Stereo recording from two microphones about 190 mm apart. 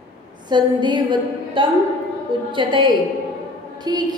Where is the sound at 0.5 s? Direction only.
25° right (ahead or behind).